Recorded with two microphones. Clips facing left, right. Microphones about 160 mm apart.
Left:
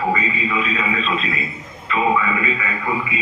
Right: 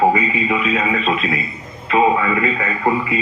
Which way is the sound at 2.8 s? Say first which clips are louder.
Right 6 dB; 65° right (ahead or behind).